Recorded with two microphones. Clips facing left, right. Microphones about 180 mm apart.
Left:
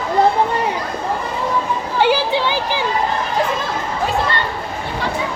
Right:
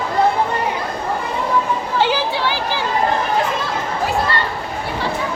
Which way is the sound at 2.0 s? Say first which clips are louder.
Left 5 dB; 15° left (ahead or behind).